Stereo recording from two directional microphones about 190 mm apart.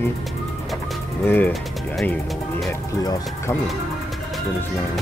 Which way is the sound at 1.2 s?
10° left (ahead or behind).